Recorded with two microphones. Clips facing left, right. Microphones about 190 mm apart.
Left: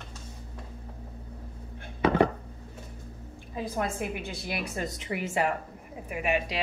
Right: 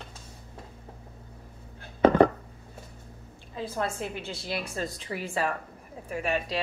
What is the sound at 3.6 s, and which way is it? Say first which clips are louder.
A woman's voice: left 1 dB; 15° left (ahead or behind).